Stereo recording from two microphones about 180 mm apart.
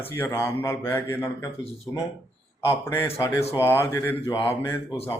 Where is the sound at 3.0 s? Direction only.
15° left (ahead or behind).